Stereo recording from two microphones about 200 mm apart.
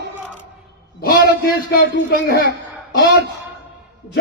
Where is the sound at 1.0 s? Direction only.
45° left (ahead or behind).